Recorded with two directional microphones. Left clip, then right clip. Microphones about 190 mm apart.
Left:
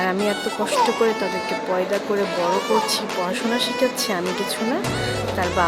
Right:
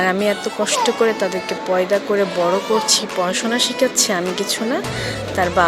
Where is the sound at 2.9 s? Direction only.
15° right (ahead or behind).